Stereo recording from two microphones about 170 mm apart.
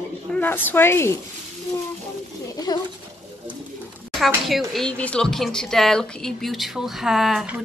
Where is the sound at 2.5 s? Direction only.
25° left (ahead or behind).